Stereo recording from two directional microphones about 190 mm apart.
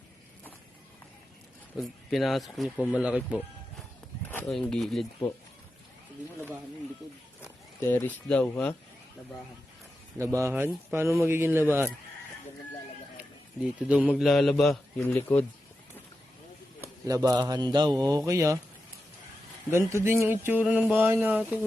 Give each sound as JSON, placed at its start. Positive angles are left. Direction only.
{"t": 1.8, "sound": "speech", "side_deg": 0}
{"t": 4.3, "sound": "speech", "side_deg": 5}
{"t": 7.0, "sound": "speech", "side_deg": 0}
{"t": 7.4, "sound": "speech", "side_deg": 15}
{"t": 10.2, "sound": "speech", "side_deg": -15}
{"t": 13.7, "sound": "speech", "side_deg": -5}
{"t": 16.8, "sound": "speech", "side_deg": -15}
{"t": 19.7, "sound": "speech", "side_deg": -15}